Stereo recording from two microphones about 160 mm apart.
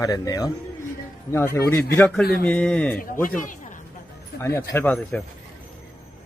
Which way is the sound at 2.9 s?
60° left (ahead or behind).